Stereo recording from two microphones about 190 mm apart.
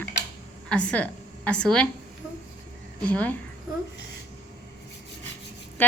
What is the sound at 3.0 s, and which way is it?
Speech, 10° left (ahead or behind).